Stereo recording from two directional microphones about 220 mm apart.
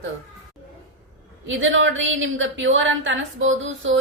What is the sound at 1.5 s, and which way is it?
A woman's voice, 60° right (ahead or behind).